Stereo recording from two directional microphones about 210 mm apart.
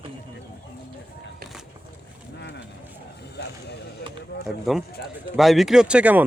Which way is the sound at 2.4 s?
55° left (ahead or behind).